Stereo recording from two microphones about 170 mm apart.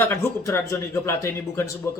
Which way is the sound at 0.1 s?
15° left (ahead or behind).